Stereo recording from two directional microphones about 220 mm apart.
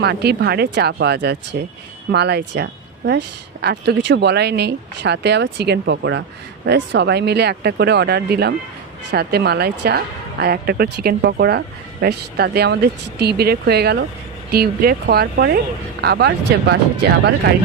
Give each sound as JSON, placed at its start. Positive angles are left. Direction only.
{"t": 0.0, "sound": "speech", "side_deg": -45}